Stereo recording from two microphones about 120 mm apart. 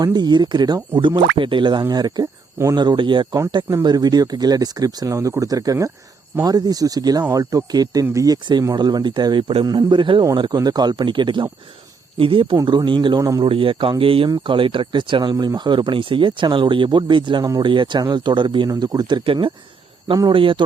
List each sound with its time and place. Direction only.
0.0 s speech: 35° right (ahead or behind)
13.1 s speech: 25° right (ahead or behind)
13.4 s speech: 45° right (ahead or behind)